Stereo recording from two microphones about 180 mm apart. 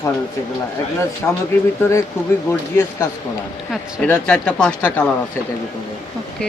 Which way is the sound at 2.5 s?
10° left (ahead or behind).